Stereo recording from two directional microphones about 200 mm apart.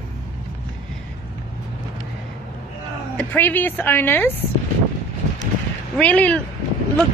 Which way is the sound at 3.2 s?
10° left (ahead or behind).